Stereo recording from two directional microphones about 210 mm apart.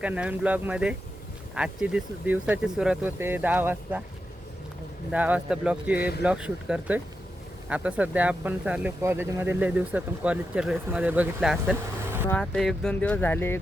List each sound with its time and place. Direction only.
0.0 s speech: 5° right (ahead or behind)
5.1 s speech: 5° right (ahead or behind)
6.0 s speech: 50° left (ahead or behind)
6.2 s speech: 5° right (ahead or behind)
12.3 s speech: 5° left (ahead or behind)